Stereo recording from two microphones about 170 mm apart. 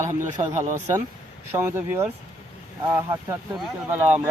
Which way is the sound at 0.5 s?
45° right (ahead or behind).